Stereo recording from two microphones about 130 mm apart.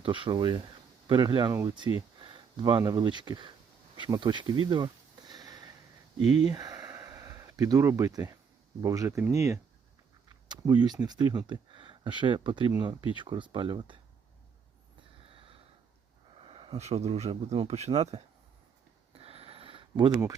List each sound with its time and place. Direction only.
0.0 s speech: 40° right (ahead or behind)
3.9 s insect: 35° right (ahead or behind)
6.2 s speech: 50° left (ahead or behind)
6.5 s a sound: 30° right (ahead or behind)
8.8 s speech: 25° right (ahead or behind)
16.4 s speech: 45° right (ahead or behind)
19.1 s a sound: 50° right (ahead or behind); by 20.3 s 30° right (ahead or behind)